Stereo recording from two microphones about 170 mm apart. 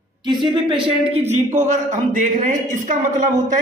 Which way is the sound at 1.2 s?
45° right (ahead or behind).